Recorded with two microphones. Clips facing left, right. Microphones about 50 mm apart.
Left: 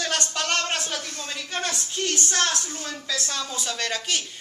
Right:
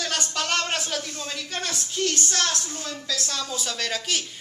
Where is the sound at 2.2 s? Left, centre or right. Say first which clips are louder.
Left 1 dB; centre.